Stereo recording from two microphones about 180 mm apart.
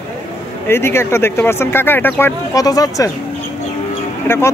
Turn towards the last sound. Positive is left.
turn(degrees=15)  # may be behind; listen again after turning